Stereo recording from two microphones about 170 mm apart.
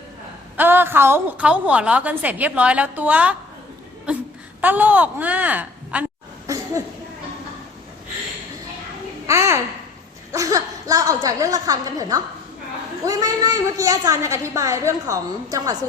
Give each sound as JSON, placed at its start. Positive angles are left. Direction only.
{"t": 0.5, "sound": "a woman's voice", "side_deg": -10}
{"t": 9.2, "sound": "a child's voice", "side_deg": -15}